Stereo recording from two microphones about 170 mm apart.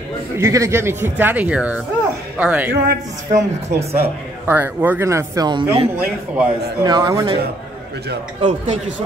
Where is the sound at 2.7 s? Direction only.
50° right (ahead or behind).